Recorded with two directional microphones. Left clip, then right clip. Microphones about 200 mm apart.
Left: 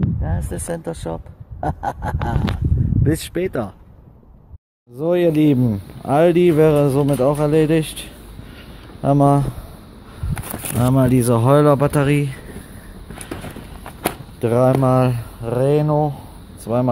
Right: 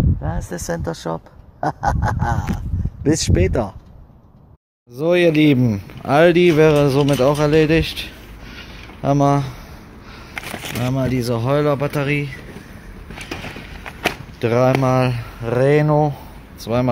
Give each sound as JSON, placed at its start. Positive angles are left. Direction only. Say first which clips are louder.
{"t": 0.2, "sound": "speech", "louder": "right 1 dB", "side_deg": 0}
{"t": 4.9, "sound": "speech", "louder": "right 2 dB", "side_deg": 5}
{"t": 8.5, "sound": "a sound", "louder": "right 2 dB", "side_deg": 25}
{"t": 10.3, "sound": "speech", "louder": "right 1 dB", "side_deg": 40}
{"t": 14.4, "sound": "speech", "louder": "even", "side_deg": 20}
{"t": 15.4, "sound": "speech", "louder": "right 2 dB", "side_deg": 0}
{"t": 16.6, "sound": "speech", "louder": "even", "side_deg": 10}